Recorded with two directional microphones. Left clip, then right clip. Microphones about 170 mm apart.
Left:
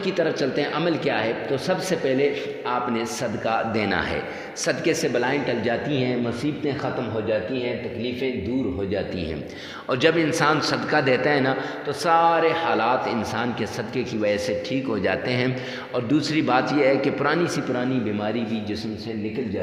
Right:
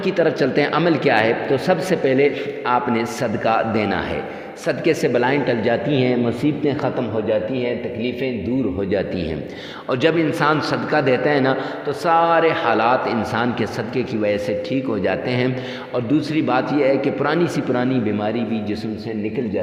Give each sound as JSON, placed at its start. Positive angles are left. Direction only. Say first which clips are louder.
{"t": 0.0, "sound": "a man's voice", "louder": "right 5 dB", "side_deg": -40}
{"t": 4.9, "sound": "a man's voice", "louder": "right 6 dB", "side_deg": -35}
{"t": 9.9, "sound": "a man's voice", "louder": "right 2 dB", "side_deg": -25}
{"t": 17.7, "sound": "a man's voice", "louder": "right 5 dB", "side_deg": -35}